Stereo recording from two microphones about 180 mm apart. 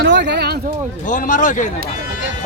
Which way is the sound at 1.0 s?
45° left (ahead or behind).